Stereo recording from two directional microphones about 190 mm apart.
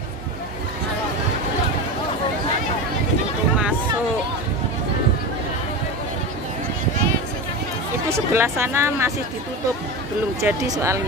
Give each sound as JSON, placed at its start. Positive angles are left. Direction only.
{"t": 8.1, "sound": "speech", "side_deg": -15}
{"t": 10.4, "sound": "speech", "side_deg": -15}